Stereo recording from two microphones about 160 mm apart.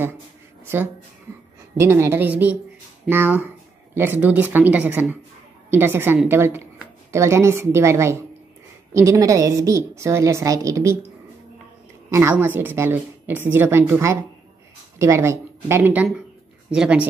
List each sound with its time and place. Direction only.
1.8 s a woman's voice: 15° right (ahead or behind)
12.1 s a woman's voice: 15° right (ahead or behind)